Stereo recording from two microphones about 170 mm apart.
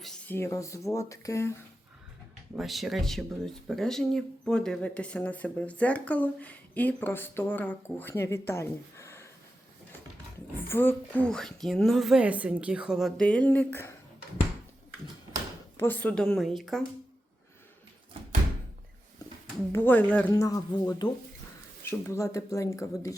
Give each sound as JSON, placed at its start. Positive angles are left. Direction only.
{"t": 0.0, "sound": "a sound", "side_deg": 5}
{"t": 0.3, "sound": "speech", "side_deg": 15}
{"t": 2.6, "sound": "speech", "side_deg": 0}
{"t": 10.7, "sound": "speech", "side_deg": 15}
{"t": 15.8, "sound": "speech", "side_deg": 10}
{"t": 19.2, "sound": "a sound", "side_deg": 20}
{"t": 19.7, "sound": "speech", "side_deg": 10}
{"t": 20.3, "sound": "speech", "side_deg": 20}